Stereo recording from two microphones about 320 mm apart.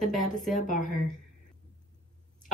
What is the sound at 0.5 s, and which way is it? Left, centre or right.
Speech, left.